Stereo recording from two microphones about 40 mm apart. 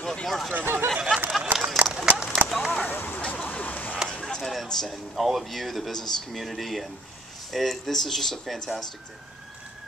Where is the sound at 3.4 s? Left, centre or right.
Left.